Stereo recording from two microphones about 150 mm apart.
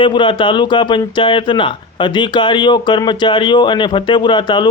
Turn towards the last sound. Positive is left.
turn(degrees=30)  # may be behind; listen again after turning